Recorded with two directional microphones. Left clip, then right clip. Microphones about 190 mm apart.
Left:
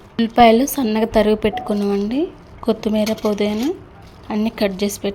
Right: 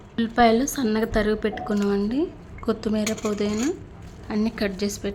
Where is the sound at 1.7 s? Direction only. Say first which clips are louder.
Left 4 dB; centre (ahead or behind).